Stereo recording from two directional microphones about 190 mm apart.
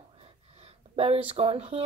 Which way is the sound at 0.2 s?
30° right (ahead or behind).